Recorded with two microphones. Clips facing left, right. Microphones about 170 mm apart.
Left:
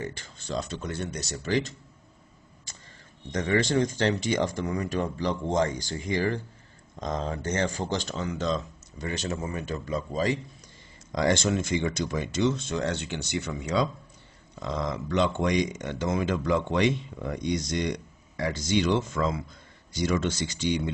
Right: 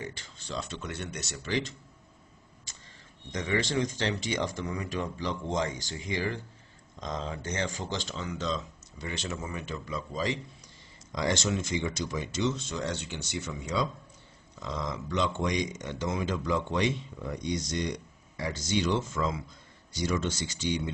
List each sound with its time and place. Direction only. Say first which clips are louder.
0.0 s speech: left 4 dB; 45° left (ahead or behind)
3.3 s speech: left 5 dB; 45° left (ahead or behind); by 20.3 s 65° left (ahead or behind)